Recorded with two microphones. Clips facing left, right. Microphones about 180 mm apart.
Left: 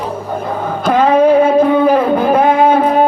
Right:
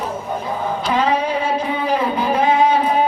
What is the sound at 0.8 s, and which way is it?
Music, 55° left (ahead or behind).